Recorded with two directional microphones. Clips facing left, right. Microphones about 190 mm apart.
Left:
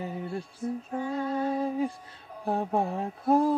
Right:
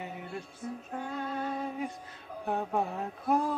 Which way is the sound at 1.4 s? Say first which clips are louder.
Left 8 dB; 35° left (ahead or behind).